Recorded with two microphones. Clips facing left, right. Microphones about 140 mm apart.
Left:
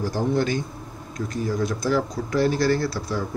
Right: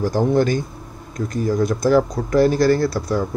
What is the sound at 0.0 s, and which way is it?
Speech, 45° right (ahead or behind).